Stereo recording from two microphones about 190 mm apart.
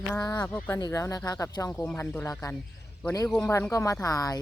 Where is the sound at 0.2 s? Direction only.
20° left (ahead or behind).